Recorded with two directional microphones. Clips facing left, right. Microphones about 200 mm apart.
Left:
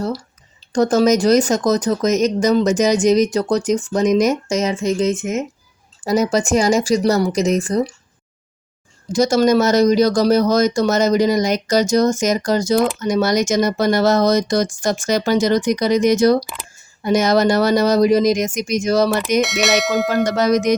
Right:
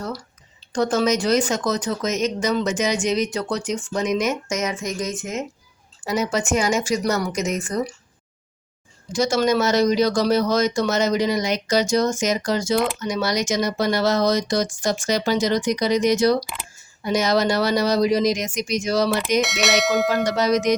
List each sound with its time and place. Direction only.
0.7 s speech: 40° left (ahead or behind); by 5.4 s 25° left (ahead or behind)
6.1 s speech: 40° left (ahead or behind)
9.1 s speech: 40° left (ahead or behind)
19.4 s speech: centre (ahead or behind)
20.2 s speech: 50° left (ahead or behind)